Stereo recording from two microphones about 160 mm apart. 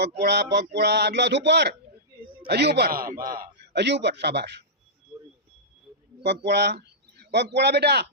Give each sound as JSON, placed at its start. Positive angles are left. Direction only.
{"t": 0.2, "sound": "a man's voice", "side_deg": -90}
{"t": 3.2, "sound": "speech", "side_deg": -65}
{"t": 5.1, "sound": "a sound", "side_deg": -10}
{"t": 6.2, "sound": "a man's voice", "side_deg": -90}